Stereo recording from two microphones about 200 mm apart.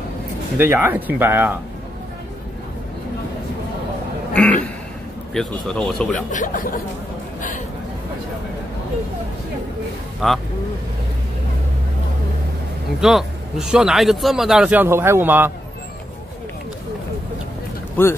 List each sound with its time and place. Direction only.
0.6 s speech: 10° right (ahead or behind)
4.3 s a sound: 5° left (ahead or behind)
5.3 s a man's voice: 5° left (ahead or behind)
6.3 s speech: 40° left (ahead or behind)
10.2 s a man's voice: centre (ahead or behind)
13.0 s a man's voice: 5° right (ahead or behind)
18.0 s speech: 10° left (ahead or behind)